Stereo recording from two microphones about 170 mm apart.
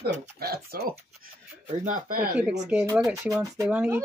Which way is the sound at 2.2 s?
10° right (ahead or behind).